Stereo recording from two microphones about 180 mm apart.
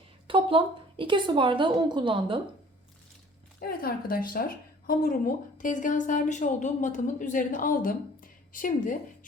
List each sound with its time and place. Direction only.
0.3 s a woman's voice: 30° right (ahead or behind)
3.6 s a woman's voice: 55° left (ahead or behind)